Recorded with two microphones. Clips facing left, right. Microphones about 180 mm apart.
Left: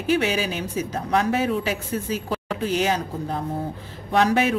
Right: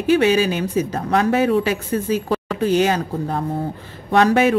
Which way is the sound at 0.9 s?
70° right (ahead or behind).